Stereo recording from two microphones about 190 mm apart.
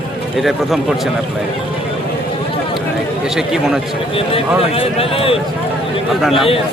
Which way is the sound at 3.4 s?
Centre (ahead or behind).